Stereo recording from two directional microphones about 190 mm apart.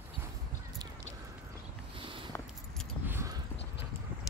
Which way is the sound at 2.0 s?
25° right (ahead or behind).